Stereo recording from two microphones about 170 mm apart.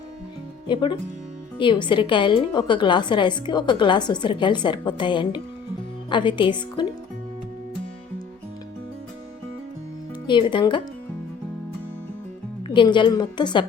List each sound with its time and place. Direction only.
0.7 s a woman's voice: 30° left (ahead or behind)
10.2 s a woman's voice: 25° left (ahead or behind)
12.6 s a woman's voice: 30° left (ahead or behind)